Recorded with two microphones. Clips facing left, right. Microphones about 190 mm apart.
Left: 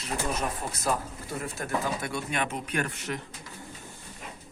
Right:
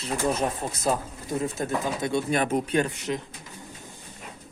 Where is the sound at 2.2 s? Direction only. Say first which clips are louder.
Right 7 dB; 35° right (ahead or behind).